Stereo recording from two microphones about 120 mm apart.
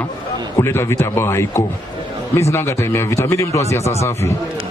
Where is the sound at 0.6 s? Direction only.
20° left (ahead or behind).